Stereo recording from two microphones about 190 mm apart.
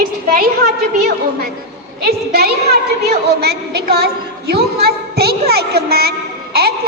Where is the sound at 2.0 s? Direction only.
55° right (ahead or behind).